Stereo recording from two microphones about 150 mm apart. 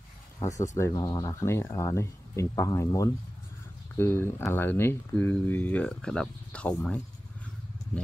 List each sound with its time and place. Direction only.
0.4 s speech: 20° left (ahead or behind)